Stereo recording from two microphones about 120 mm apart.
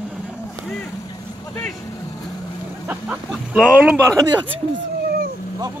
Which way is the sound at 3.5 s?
10° right (ahead or behind).